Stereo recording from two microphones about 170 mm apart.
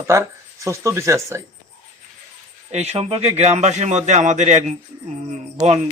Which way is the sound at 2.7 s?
40° right (ahead or behind).